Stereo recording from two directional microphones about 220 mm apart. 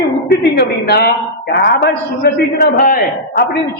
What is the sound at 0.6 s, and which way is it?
A woman's voice, 45° left (ahead or behind).